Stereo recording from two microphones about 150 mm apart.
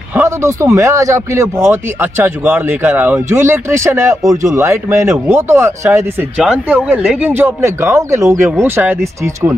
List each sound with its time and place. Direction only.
0.1 s speech: 15° right (ahead or behind)